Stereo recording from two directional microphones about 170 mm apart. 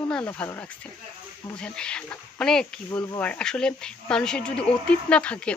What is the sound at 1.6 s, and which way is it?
Speech, 5° left (ahead or behind).